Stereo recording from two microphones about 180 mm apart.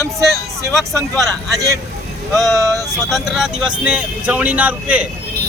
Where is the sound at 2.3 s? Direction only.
Centre (ahead or behind).